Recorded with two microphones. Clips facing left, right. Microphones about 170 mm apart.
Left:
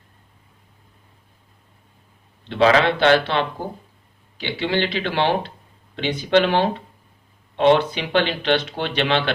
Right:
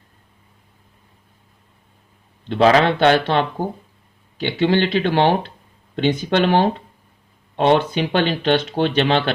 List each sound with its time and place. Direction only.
2.5 s speech: 40° right (ahead or behind)